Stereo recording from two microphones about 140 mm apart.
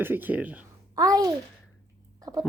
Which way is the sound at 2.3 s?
30° right (ahead or behind).